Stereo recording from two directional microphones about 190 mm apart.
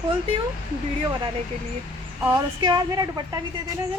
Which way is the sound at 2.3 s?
20° right (ahead or behind).